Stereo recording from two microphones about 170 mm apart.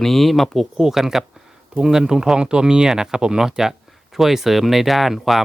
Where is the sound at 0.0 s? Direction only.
Centre (ahead or behind).